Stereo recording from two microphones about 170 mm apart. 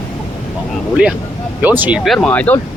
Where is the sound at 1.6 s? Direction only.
10° right (ahead or behind).